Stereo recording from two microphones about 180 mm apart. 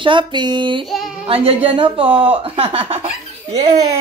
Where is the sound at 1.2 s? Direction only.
30° right (ahead or behind).